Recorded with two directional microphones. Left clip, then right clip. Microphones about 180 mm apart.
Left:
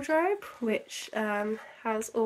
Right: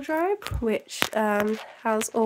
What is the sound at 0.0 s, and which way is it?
Speech, 20° right (ahead or behind).